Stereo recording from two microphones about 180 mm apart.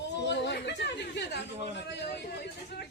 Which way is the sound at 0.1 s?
75° left (ahead or behind).